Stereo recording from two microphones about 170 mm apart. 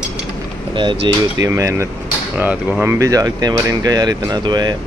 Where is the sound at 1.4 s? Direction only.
15° right (ahead or behind).